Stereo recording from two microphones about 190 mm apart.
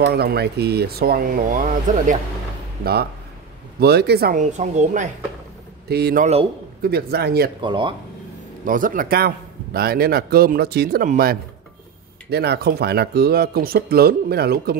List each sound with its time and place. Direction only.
0.0 s speech: 55° right (ahead or behind)
2.8 s speech: 55° right (ahead or behind); by 5.1 s 40° right (ahead or behind)
5.9 s speech: 60° right (ahead or behind)
7.6 s speech: 25° right (ahead or behind)
8.6 s speech: 45° right (ahead or behind)